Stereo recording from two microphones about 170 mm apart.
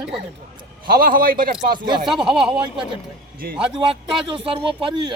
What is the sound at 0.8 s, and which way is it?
Speech, 60° right (ahead or behind).